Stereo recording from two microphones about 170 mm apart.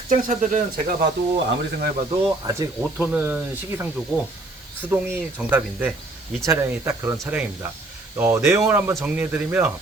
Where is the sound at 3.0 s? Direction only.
10° right (ahead or behind).